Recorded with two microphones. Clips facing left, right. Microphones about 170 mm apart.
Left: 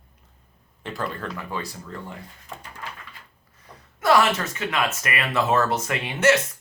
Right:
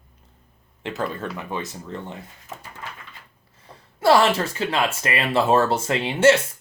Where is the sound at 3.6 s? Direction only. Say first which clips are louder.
Right 5 dB; 30° right (ahead or behind).